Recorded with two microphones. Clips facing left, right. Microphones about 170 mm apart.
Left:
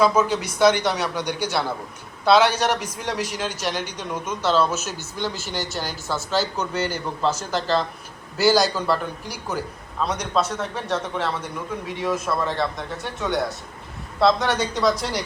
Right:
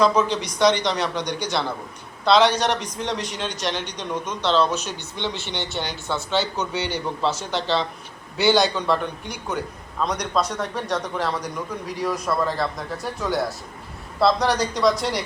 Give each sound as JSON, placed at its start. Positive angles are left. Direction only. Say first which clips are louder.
{"t": 0.0, "sound": "a man's voice", "louder": "even", "side_deg": 5}